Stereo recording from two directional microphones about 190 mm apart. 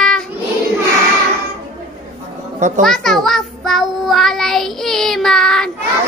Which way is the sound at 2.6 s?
40° right (ahead or behind).